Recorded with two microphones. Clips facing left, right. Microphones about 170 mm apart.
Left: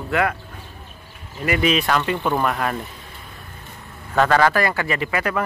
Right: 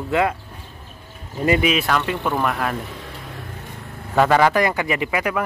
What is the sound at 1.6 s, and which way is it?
Speech, 5° right (ahead or behind).